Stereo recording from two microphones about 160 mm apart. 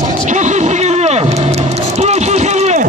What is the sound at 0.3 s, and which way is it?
Vehicle, 50° right (ahead or behind).